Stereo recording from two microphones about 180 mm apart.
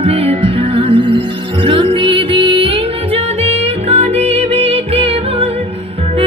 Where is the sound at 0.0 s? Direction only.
30° right (ahead or behind).